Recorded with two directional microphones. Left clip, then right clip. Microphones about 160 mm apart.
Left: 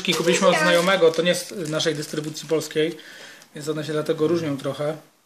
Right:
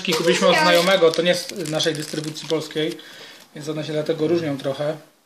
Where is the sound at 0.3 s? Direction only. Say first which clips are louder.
Right 2 dB; 15° left (ahead or behind).